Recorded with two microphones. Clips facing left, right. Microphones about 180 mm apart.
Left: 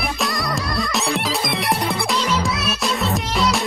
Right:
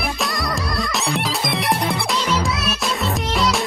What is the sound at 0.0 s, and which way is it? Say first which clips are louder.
Music: even; centre (ahead or behind).